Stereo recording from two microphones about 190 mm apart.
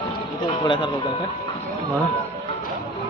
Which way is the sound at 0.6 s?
25° left (ahead or behind).